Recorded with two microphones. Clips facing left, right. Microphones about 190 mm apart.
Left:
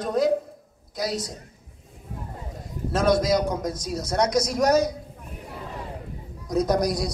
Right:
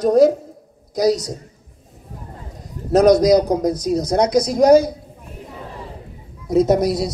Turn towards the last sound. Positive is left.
turn(degrees=-25)  # may be behind; listen again after turning